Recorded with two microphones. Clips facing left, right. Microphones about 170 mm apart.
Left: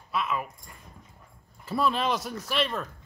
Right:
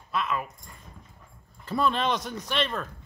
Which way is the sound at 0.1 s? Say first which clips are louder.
Even; 5° left (ahead or behind).